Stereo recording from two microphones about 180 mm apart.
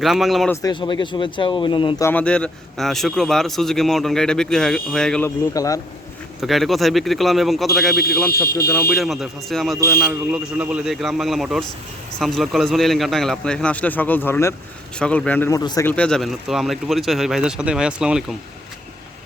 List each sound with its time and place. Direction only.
0.0 s speech: centre (ahead or behind)
0.5 s speech: 20° left (ahead or behind)
2.0 s speech: 10° left (ahead or behind)
5.5 s speech: 20° left (ahead or behind)
6.4 s speech: centre (ahead or behind)
8.5 s speech: 15° left (ahead or behind)
8.9 s speech: centre (ahead or behind); by 15.9 s 20° left (ahead or behind)
15.9 s speech: 5° left (ahead or behind)